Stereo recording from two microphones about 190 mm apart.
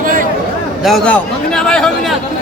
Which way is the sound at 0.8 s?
Centre (ahead or behind).